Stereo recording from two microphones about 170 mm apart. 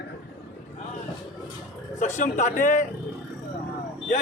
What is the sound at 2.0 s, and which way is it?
Speech, 45° left (ahead or behind).